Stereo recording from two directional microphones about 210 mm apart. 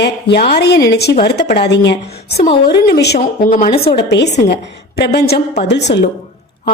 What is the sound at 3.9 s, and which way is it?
A woman's voice, 55° left (ahead or behind).